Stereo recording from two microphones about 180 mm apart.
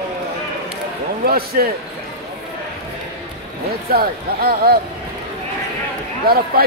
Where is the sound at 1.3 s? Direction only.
55° right (ahead or behind).